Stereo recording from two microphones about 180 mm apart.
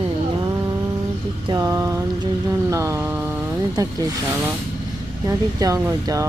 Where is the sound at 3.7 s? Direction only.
20° right (ahead or behind).